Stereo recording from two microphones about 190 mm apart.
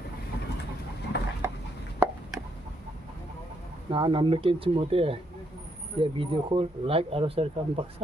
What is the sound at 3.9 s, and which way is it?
Speech, 25° right (ahead or behind).